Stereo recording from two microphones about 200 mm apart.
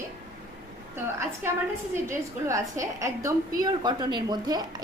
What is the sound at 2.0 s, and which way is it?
A woman's voice, 15° right (ahead or behind).